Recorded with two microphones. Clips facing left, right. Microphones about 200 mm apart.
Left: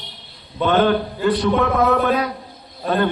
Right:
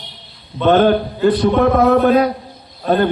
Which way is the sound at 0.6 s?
45° right (ahead or behind).